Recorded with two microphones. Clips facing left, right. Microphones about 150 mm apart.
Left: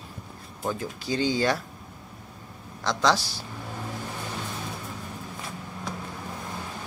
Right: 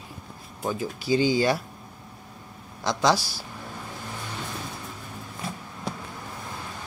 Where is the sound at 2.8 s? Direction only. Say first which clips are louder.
Right 1 dB; 10° right (ahead or behind).